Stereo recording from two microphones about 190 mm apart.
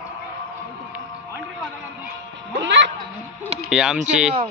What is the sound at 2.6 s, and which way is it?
Speech, 70° right (ahead or behind).